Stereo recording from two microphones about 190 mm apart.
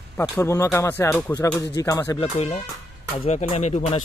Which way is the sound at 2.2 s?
30° left (ahead or behind).